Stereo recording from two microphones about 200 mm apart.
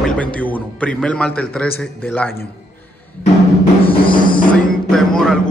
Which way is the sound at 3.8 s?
25° left (ahead or behind).